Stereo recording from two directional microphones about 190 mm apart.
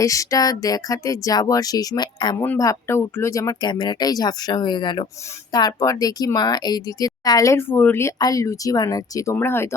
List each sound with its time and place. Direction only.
0.0 s speech: 15° left (ahead or behind)